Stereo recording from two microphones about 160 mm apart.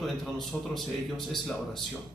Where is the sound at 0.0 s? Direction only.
Centre (ahead or behind).